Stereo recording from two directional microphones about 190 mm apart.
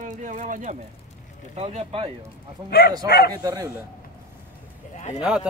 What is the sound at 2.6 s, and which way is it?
Speech, 55° left (ahead or behind).